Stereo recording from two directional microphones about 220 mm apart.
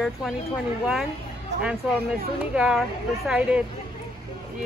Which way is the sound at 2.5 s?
5° right (ahead or behind).